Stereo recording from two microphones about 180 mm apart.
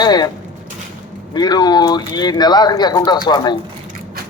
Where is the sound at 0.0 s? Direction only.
25° left (ahead or behind).